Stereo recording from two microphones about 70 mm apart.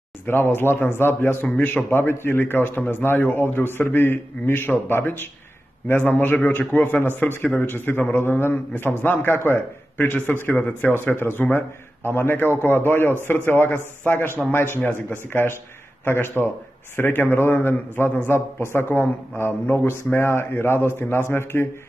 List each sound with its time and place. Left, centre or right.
0.3 s a man's voice: left